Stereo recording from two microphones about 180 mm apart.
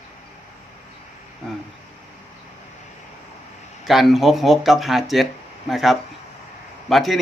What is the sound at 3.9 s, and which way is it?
Speech, centre (ahead or behind).